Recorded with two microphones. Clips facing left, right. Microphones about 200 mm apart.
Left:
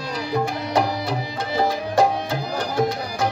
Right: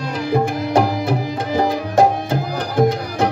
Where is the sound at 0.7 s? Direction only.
50° right (ahead or behind).